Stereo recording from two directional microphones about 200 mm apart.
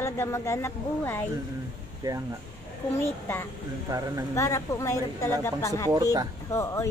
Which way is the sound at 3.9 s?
15° right (ahead or behind).